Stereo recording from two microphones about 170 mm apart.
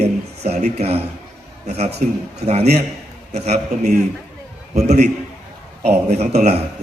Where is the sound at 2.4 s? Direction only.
40° right (ahead or behind).